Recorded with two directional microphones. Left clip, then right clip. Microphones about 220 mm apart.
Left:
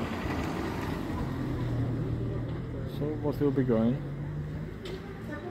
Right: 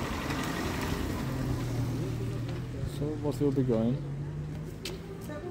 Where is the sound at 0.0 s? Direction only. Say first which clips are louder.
Even; 45° right (ahead or behind).